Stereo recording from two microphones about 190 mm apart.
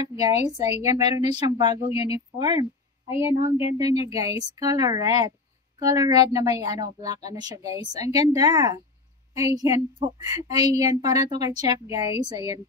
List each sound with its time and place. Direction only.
0.0 s a woman's voice: 20° right (ahead or behind)